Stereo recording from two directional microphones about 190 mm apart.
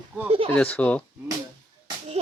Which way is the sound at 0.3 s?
30° right (ahead or behind).